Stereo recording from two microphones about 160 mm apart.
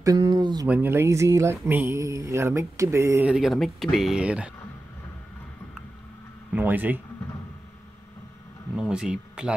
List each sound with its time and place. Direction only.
0.0 s speech: 25° right (ahead or behind)
0.7 s speech: 10° right (ahead or behind)
3.3 s speech: centre (ahead or behind)
6.5 s speech: 10° right (ahead or behind)
8.7 s speech: 5° right (ahead or behind)